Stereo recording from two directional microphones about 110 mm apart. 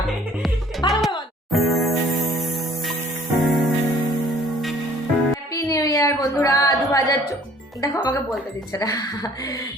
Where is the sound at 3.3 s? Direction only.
Centre (ahead or behind).